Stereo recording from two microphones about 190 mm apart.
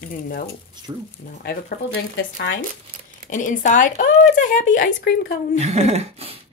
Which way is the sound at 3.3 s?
45° left (ahead or behind).